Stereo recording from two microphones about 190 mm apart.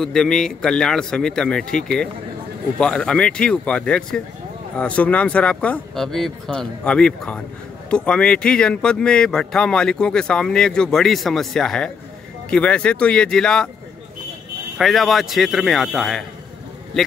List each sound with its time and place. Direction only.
0.0 s speech: 5° left (ahead or behind)
14.8 s a man's voice: centre (ahead or behind)